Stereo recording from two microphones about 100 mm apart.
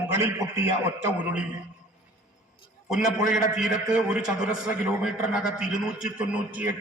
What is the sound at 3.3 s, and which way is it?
A man's voice, 5° right (ahead or behind).